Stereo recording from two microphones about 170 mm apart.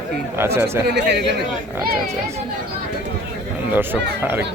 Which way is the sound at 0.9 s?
90° right.